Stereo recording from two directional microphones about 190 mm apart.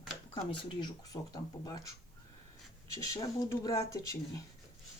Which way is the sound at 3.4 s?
15° left (ahead or behind).